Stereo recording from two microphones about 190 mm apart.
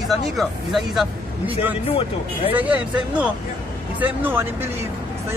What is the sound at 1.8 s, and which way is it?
Speech, 30° left (ahead or behind).